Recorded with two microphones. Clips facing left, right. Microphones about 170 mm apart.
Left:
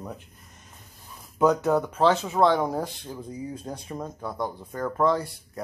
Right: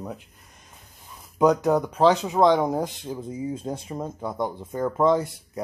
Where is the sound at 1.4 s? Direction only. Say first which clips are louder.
Right 2 dB; 15° right (ahead or behind).